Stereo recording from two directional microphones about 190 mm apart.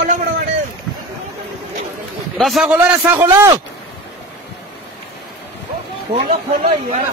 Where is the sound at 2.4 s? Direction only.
Centre (ahead or behind).